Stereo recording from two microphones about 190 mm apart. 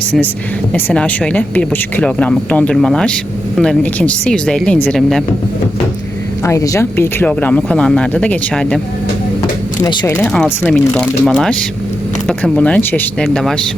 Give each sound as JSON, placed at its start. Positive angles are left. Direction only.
{"t": 0.7, "sound": "speech", "side_deg": 5}
{"t": 6.4, "sound": "speech", "side_deg": 15}
{"t": 9.8, "sound": "speech", "side_deg": 20}
{"t": 10.1, "sound": "speech", "side_deg": 5}
{"t": 12.4, "sound": "speech", "side_deg": 5}